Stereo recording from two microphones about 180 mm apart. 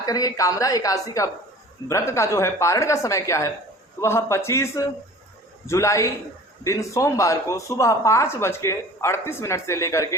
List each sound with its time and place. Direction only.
0.0 s a woman's voice: 20° left (ahead or behind)